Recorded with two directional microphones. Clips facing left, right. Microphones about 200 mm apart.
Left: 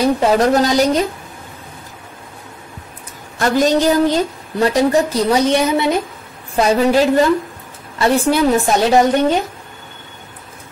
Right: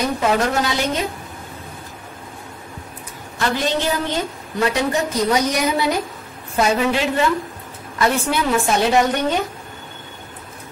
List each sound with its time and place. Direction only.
0.0 s a woman's voice: 35° left (ahead or behind)
3.3 s a woman's voice: 45° left (ahead or behind); by 6.0 s 25° left (ahead or behind)
6.5 s a woman's voice: 35° left (ahead or behind)